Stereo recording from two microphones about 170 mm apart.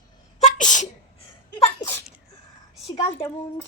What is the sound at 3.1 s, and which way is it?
Speech, 15° left (ahead or behind).